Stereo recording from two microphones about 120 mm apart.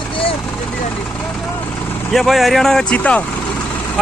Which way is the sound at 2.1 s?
Centre (ahead or behind).